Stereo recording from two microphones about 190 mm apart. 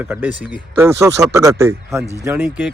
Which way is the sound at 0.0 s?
10° right (ahead or behind).